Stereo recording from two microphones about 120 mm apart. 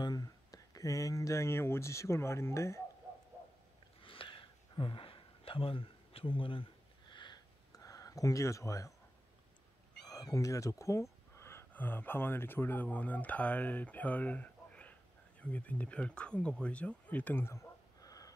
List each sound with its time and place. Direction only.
0.0 s speech: 35° left (ahead or behind)
4.0 s a sound: 45° left (ahead or behind); by 8.9 s 25° left (ahead or behind)
10.3 s speech: 30° left (ahead or behind)